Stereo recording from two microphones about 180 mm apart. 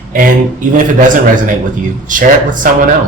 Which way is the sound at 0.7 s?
45° right (ahead or behind).